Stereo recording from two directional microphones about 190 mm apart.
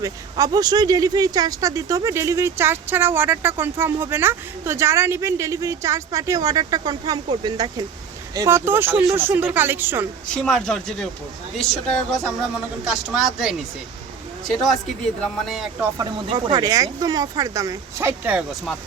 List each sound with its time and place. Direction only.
0.0 s speech: 20° right (ahead or behind)
10.2 s speech: 5° left (ahead or behind)
16.0 s speech: 20° right (ahead or behind); by 18.8 s centre (ahead or behind)